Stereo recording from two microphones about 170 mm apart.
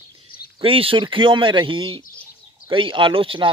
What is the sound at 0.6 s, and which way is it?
Speech, 30° right (ahead or behind).